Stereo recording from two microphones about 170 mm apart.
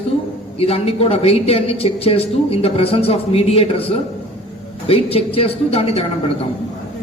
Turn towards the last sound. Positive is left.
turn(degrees=35)  # may be behind; listen again after turning